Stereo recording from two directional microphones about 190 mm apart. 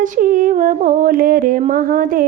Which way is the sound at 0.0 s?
45° right (ahead or behind).